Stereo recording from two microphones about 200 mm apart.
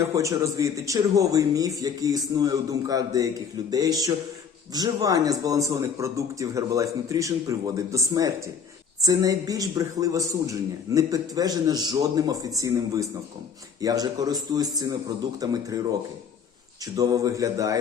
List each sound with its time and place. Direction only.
0.0 s a man's voice: 15° right (ahead or behind)
16.8 s a man's voice: 20° right (ahead or behind)